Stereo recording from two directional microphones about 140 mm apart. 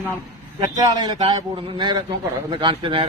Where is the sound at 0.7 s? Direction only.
30° right (ahead or behind).